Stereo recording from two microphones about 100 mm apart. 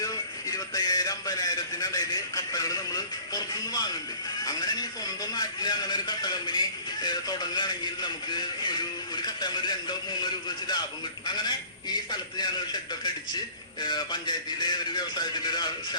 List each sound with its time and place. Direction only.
0.0 s a sound: 35° left (ahead or behind)
4.4 s a man's voice: 45° left (ahead or behind)
11.3 s a man's voice: 45° left (ahead or behind)
13.8 s a man's voice: 50° left (ahead or behind)